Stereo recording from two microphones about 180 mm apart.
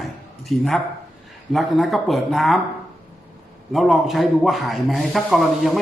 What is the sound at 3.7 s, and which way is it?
A man's voice, centre (ahead or behind).